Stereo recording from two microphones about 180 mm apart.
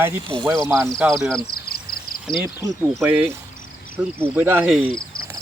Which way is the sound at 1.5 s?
55° left (ahead or behind).